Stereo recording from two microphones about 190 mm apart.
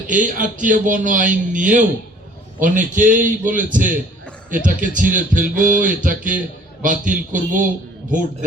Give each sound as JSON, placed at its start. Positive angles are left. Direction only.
{"t": 0.1, "sound": "speech", "side_deg": -45}